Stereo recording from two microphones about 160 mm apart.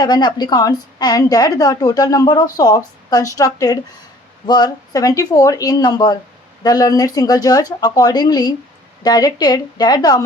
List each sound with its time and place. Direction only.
0.0 s a woman's voice: 25° left (ahead or behind)